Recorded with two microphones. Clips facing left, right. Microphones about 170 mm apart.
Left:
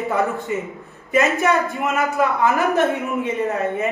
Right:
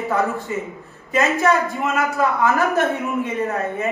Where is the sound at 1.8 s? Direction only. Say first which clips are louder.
Even; 20° left (ahead or behind).